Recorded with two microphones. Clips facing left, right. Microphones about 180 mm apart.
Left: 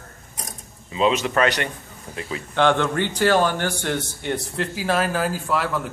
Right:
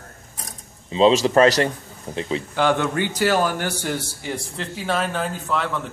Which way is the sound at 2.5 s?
10° right (ahead or behind).